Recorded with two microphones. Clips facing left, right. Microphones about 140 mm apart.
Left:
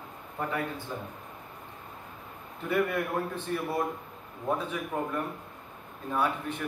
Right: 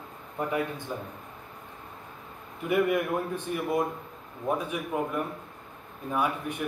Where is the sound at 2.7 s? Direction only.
15° right (ahead or behind).